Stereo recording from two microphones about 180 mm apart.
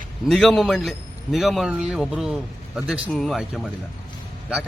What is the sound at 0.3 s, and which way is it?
A man's voice, centre (ahead or behind).